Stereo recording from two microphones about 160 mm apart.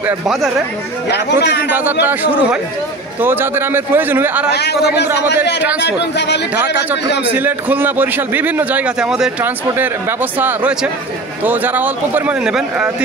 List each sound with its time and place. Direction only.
0.0 s speech: centre (ahead or behind)
1.1 s speech: 90° left
2.0 s a man's voice: 10° right (ahead or behind)
4.5 s speech: 90° left
7.3 s a man's voice: 10° right (ahead or behind)